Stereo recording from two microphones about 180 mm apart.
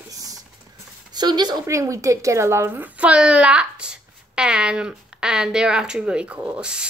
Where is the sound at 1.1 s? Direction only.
25° right (ahead or behind).